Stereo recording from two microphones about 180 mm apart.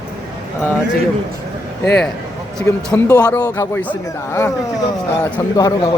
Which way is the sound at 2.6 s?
15° left (ahead or behind).